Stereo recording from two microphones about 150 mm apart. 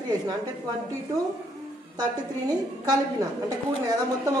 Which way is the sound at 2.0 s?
25° right (ahead or behind).